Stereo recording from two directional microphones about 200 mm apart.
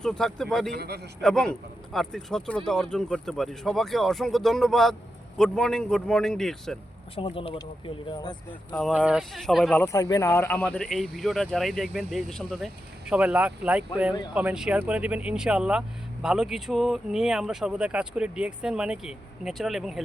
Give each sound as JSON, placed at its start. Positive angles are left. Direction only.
{"t": 0.0, "sound": "speech", "side_deg": 5}
{"t": 0.8, "sound": "a man's voice", "side_deg": -55}
{"t": 1.2, "sound": "speech", "side_deg": 5}
{"t": 7.2, "sound": "speech", "side_deg": 25}
{"t": 8.8, "sound": "speech", "side_deg": -5}